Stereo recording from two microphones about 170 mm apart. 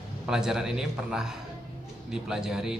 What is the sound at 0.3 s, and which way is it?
A man's voice, 5° right (ahead or behind).